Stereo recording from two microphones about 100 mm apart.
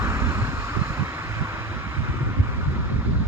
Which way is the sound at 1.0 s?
20° right (ahead or behind).